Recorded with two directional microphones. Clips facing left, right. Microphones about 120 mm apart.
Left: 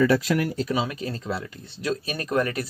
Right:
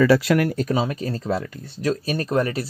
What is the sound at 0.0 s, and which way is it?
Speech, 80° right.